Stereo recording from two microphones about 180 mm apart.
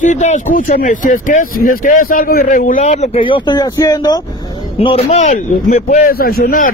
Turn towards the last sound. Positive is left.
turn(degrees=50)  # may be behind; listen again after turning